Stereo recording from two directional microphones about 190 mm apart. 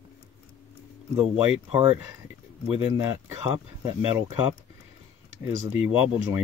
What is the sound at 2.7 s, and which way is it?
Speech, 10° right (ahead or behind).